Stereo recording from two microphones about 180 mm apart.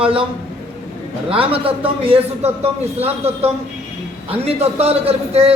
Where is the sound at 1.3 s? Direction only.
30° right (ahead or behind).